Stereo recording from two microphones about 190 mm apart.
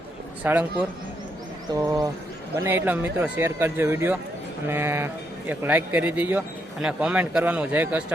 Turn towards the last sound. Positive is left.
turn(degrees=-10)  # may be behind; listen again after turning